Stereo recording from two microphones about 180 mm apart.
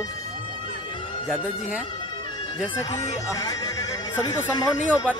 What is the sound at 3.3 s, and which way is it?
Speech, 20° left (ahead or behind).